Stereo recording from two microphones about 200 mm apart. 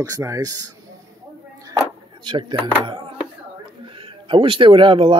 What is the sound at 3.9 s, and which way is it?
Speech, 25° right (ahead or behind).